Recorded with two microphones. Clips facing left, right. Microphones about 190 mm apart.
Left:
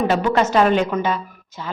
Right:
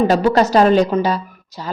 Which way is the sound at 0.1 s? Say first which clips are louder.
Right 4 dB; 35° right (ahead or behind).